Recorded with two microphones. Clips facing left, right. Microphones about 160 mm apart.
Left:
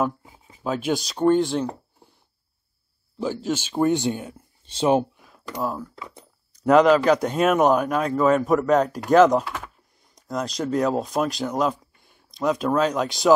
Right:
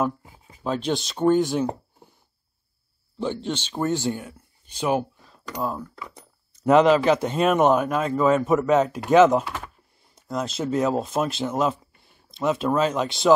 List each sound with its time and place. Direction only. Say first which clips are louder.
0.0 s speech: even; centre (ahead or behind)
3.2 s speech: left 2 dB; 5° left (ahead or behind); by 5.2 s 25° left (ahead or behind)
5.2 s a sound: left 1 dB; 5° left (ahead or behind)
7.2 s speech: left 1 dB; centre (ahead or behind)